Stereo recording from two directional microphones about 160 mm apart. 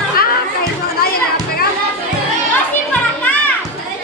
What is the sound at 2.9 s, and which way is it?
Children playing, 10° left (ahead or behind).